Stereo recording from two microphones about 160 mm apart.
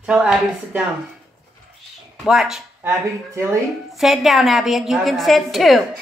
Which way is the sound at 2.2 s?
5° right (ahead or behind).